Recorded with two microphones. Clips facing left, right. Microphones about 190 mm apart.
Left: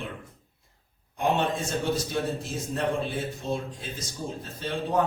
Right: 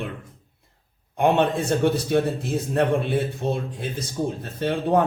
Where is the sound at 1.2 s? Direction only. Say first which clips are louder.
Right 6 dB; 60° right (ahead or behind).